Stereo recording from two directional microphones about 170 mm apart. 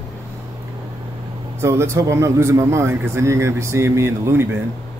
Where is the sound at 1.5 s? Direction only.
15° right (ahead or behind).